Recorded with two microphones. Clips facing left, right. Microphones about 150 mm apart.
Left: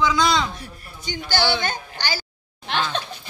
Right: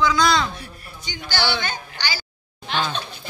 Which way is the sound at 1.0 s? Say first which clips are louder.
Left 3 dB; 50° left (ahead or behind).